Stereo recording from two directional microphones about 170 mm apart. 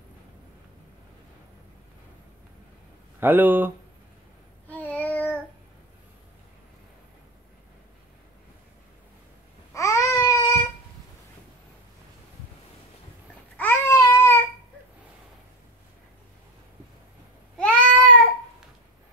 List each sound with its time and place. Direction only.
3.2 s speech: 10° right (ahead or behind)
4.6 s child singing: 10° left (ahead or behind)
9.8 s babbling: 20° left (ahead or behind)
13.6 s babbling: 15° left (ahead or behind)
17.6 s a sound: 5° left (ahead or behind)